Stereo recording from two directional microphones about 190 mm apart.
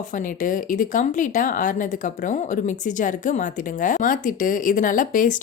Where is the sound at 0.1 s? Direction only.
45° left (ahead or behind).